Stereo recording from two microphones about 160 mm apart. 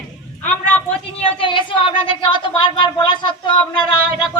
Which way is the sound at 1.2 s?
35° left (ahead or behind).